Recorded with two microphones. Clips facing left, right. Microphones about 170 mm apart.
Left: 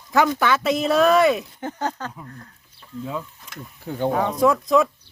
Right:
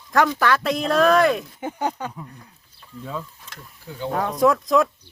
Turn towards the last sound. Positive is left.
turn(degrees=0)  # may be behind; listen again after turning